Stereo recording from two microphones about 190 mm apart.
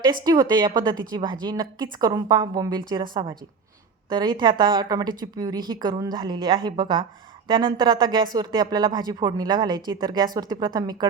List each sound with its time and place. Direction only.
0.3 s speech: 20° right (ahead or behind)